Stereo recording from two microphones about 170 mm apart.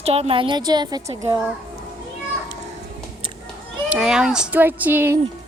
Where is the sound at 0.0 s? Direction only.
35° right (ahead or behind).